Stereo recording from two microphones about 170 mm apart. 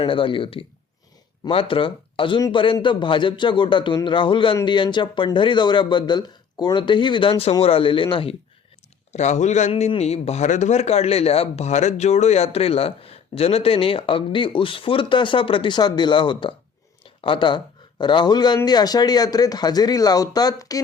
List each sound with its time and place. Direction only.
0.0 s a man's voice: 30° left (ahead or behind)
9.1 s a man's voice: 45° left (ahead or behind); by 20.8 s 20° left (ahead or behind)